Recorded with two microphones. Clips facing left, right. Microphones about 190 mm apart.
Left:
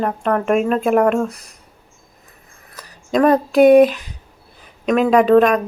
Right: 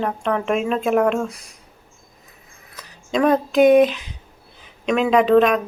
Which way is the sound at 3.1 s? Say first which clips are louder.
Left 3 dB; centre (ahead or behind).